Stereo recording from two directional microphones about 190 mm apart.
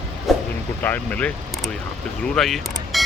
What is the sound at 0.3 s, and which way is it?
Vehicle, centre (ahead or behind).